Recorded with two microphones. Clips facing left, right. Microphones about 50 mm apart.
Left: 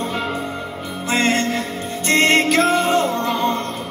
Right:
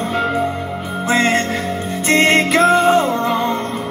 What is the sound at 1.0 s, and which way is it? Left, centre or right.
Music, right.